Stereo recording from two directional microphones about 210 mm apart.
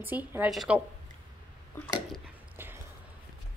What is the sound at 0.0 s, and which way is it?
Speech, 10° right (ahead or behind).